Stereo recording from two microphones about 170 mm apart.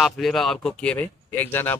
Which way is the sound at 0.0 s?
Centre (ahead or behind).